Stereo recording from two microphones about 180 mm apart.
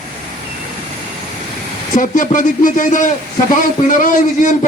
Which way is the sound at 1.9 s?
45° left (ahead or behind).